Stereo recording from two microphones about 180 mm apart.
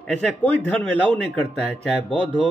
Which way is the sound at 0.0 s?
5° left (ahead or behind).